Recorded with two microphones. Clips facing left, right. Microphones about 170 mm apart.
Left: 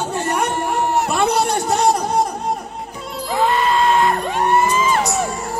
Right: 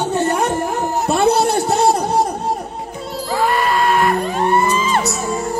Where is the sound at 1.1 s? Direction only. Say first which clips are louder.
Right 3 dB; 30° right (ahead or behind).